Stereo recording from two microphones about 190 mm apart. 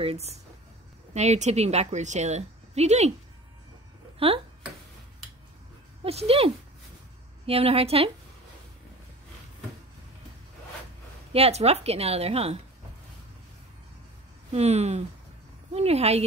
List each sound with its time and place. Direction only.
0.0 s a woman's voice: 35° right (ahead or behind)
4.2 s speech: 30° right (ahead or behind)
6.0 s a woman's voice: 30° right (ahead or behind)
11.3 s a woman's voice: 35° right (ahead or behind)
14.5 s a woman's voice: 35° right (ahead or behind)